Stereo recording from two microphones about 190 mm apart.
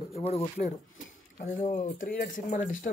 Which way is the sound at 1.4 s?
45° left (ahead or behind).